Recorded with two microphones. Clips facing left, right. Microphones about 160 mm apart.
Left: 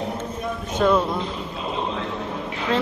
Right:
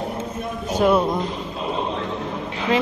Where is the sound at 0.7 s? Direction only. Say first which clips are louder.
Right 2 dB; 15° right (ahead or behind).